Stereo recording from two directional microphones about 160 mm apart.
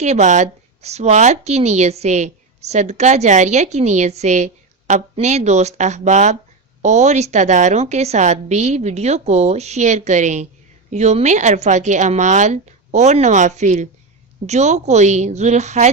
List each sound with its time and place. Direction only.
0.0 s speech: 45° right (ahead or behind)